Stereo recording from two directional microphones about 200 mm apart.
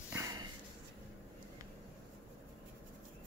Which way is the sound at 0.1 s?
20° right (ahead or behind).